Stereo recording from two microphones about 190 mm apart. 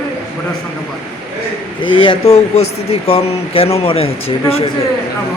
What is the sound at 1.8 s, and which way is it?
Speech, 25° left (ahead or behind).